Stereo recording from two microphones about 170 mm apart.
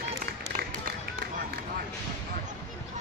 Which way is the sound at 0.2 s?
60° right (ahead or behind).